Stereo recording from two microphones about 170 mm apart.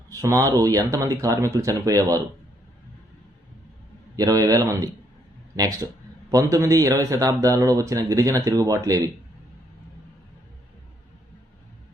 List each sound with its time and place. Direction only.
0.1 s speech: 20° right (ahead or behind)
4.2 s speech: 20° right (ahead or behind)